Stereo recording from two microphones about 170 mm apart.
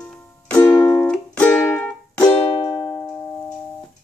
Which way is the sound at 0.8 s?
20° left (ahead or behind).